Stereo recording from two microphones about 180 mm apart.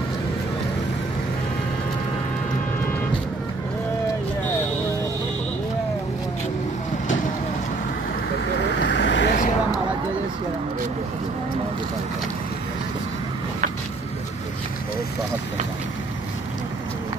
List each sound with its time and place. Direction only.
8.6 s vehicle: 80° left